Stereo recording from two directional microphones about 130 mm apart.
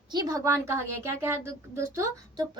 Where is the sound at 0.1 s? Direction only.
30° right (ahead or behind).